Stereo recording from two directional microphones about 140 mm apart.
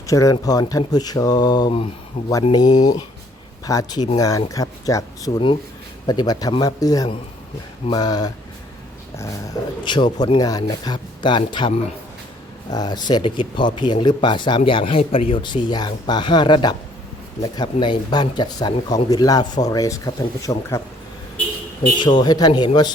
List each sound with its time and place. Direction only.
0.1 s speech: 25° left (ahead or behind)
2.6 s speech: 60° left (ahead or behind)
3.7 s speech: 25° left (ahead or behind)
9.8 s speech: 35° left (ahead or behind)
12.7 s speech: 30° left (ahead or behind)
21.9 s speech: 35° left (ahead or behind)